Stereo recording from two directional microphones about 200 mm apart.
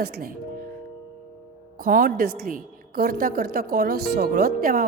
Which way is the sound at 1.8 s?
45° right (ahead or behind).